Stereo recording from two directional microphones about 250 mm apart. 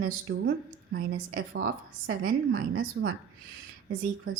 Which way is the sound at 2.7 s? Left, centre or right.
Right.